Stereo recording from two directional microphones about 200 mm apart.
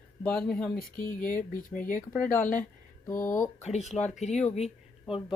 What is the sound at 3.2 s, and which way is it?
Speech, 10° left (ahead or behind).